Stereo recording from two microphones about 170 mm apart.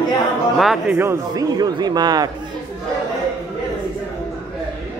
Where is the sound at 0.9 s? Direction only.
20° right (ahead or behind).